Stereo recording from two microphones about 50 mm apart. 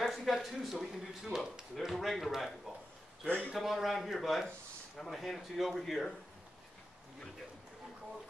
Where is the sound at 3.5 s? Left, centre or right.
Centre.